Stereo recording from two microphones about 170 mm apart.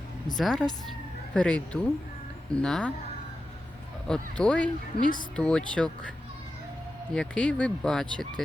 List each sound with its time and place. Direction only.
0.3 s speech: centre (ahead or behind)
4.0 s speech: 5° left (ahead or behind)